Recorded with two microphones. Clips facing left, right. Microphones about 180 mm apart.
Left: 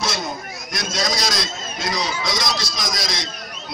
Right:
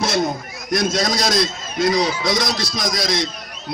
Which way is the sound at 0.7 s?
55° right (ahead or behind).